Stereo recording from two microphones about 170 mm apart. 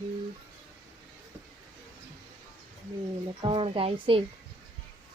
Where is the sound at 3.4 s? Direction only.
30° right (ahead or behind).